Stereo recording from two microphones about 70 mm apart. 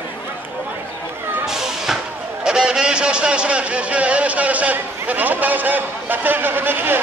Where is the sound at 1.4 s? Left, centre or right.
Centre; by 7.0 s right.